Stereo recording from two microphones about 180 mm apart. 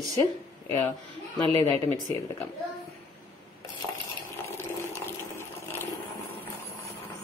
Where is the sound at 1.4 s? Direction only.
30° right (ahead or behind).